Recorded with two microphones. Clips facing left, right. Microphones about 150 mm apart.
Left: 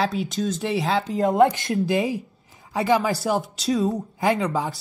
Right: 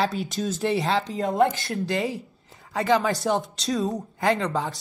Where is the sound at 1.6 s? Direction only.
20° left (ahead or behind).